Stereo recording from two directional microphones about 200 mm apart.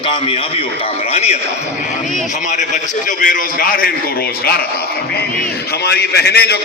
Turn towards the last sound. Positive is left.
turn(degrees=55)  # may be behind; listen again after turning